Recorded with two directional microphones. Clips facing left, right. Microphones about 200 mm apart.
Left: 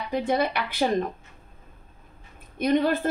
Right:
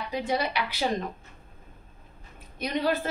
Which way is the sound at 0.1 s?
55° left (ahead or behind).